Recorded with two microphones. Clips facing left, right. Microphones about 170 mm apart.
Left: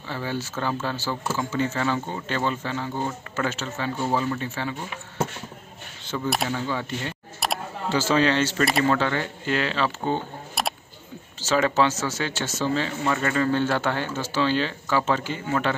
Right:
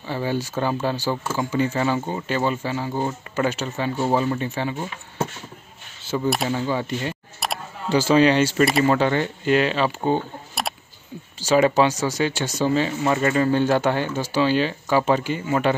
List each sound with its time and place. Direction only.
0.1 s speech: 15° right (ahead or behind)
6.1 s speech: 20° right (ahead or behind)
7.4 s camera: centre (ahead or behind)
7.9 s speech: 15° right (ahead or behind)
10.6 s a sound: centre (ahead or behind)
11.4 s speech: 15° right (ahead or behind)